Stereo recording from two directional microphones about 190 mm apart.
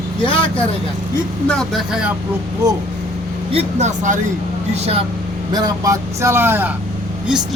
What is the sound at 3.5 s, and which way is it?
Speech, 40° right (ahead or behind).